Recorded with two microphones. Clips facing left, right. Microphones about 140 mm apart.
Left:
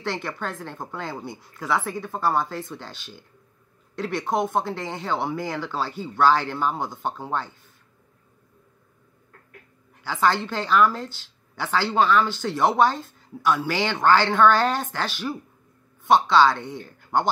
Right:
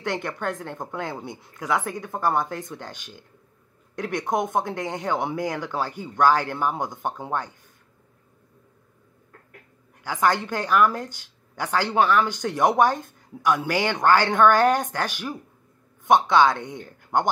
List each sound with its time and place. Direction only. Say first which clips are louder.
0.0 s speech: right 2 dB; 15° right (ahead or behind)
10.0 s speech: even; 15° right (ahead or behind)